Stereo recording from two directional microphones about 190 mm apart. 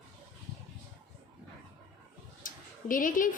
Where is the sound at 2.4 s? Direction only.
45° left (ahead or behind).